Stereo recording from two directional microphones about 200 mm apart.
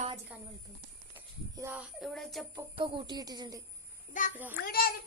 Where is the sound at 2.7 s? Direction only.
25° right (ahead or behind).